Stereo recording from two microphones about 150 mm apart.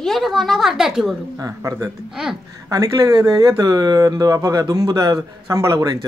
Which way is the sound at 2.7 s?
25° right (ahead or behind).